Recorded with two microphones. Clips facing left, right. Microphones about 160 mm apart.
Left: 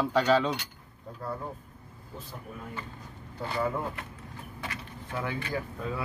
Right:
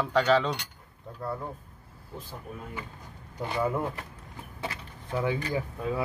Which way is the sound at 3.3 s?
20° right (ahead or behind).